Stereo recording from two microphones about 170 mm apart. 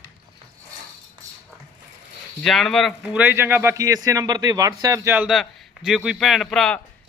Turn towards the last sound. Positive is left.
turn(degrees=0)  # may be behind; listen again after turning